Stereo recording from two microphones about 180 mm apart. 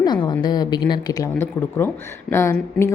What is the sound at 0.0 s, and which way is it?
A woman's voice, 25° left (ahead or behind).